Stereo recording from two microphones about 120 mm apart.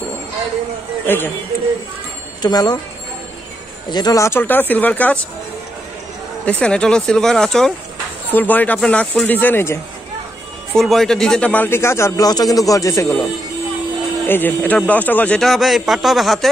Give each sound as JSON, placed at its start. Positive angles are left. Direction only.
{"t": 1.0, "sound": "speech", "side_deg": 15}
{"t": 2.4, "sound": "speech", "side_deg": 35}
{"t": 3.9, "sound": "speech", "side_deg": 30}
{"t": 6.4, "sound": "speech", "side_deg": 10}
{"t": 8.3, "sound": "speech", "side_deg": 15}
{"t": 10.7, "sound": "speech", "side_deg": 5}
{"t": 14.2, "sound": "speech", "side_deg": 15}
{"t": 15.4, "sound": "speech", "side_deg": 0}